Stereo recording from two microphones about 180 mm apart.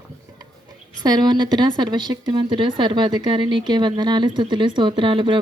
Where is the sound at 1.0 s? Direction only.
25° right (ahead or behind).